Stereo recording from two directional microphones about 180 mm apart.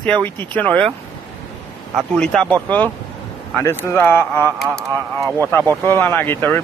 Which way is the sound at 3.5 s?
10° left (ahead or behind).